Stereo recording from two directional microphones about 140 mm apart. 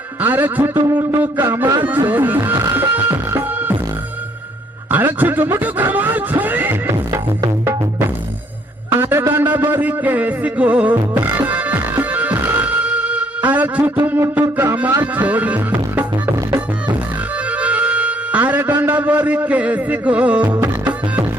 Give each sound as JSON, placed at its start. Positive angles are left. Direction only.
{"t": 0.2, "sound": "a man's voice", "side_deg": -15}
{"t": 4.9, "sound": "speech", "side_deg": -15}
{"t": 7.1, "sound": "music", "side_deg": -20}